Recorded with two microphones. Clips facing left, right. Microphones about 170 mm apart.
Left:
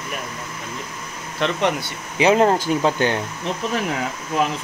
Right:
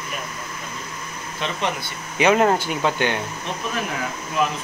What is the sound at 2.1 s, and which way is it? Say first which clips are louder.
Speech: left 1 dB; 25° left (ahead or behind).